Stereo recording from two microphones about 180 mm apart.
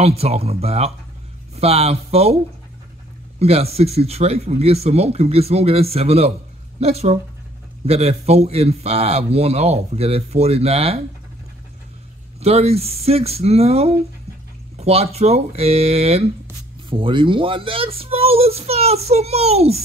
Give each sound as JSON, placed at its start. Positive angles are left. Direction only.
{"t": 0.0, "sound": "a man's voice", "side_deg": -35}
{"t": 3.3, "sound": "a man's voice", "side_deg": -35}
{"t": 12.4, "sound": "a man's voice", "side_deg": -35}